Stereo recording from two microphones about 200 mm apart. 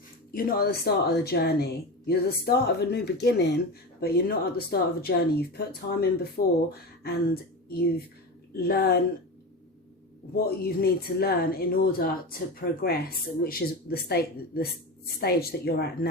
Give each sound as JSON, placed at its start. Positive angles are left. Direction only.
{"t": 0.3, "sound": "speech", "side_deg": 45}
{"t": 10.3, "sound": "speech", "side_deg": 50}